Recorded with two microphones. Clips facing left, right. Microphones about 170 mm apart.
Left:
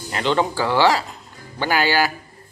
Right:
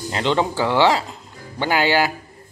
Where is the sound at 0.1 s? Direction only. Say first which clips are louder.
Even; 20° right (ahead or behind).